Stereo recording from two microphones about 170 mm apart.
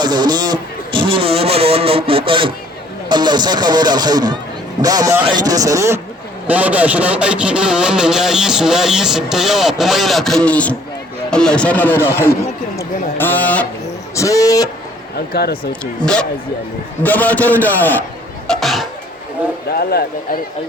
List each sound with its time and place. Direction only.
0.0 s a man's voice: 25° right (ahead or behind); by 12.4 s 15° left (ahead or behind)
13.1 s a sound: 10° left (ahead or behind)
14.2 s speech: 20° left (ahead or behind)
15.3 s speech: 70° left (ahead or behind)
15.8 s speech: 5° left (ahead or behind)
18.4 s a sound: centre (ahead or behind)
19.7 s speech: 65° left (ahead or behind)